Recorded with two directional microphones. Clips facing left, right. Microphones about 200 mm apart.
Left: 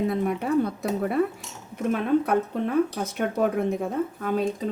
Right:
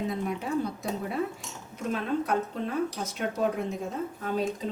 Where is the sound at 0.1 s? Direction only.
60° left (ahead or behind).